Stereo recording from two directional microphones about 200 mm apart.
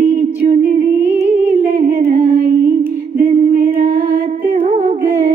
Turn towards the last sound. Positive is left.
turn(degrees=-30)  # may be behind; listen again after turning